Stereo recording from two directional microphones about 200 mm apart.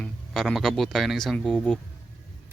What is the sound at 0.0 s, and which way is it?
Speech, centre (ahead or behind).